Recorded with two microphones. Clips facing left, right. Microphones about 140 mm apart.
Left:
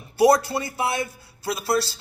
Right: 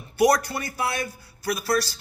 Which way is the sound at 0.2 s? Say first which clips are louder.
Left 3 dB; 25° left (ahead or behind).